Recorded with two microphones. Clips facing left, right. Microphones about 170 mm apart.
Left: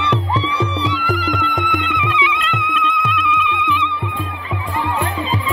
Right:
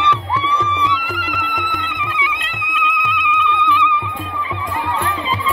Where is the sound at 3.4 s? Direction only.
20° left (ahead or behind).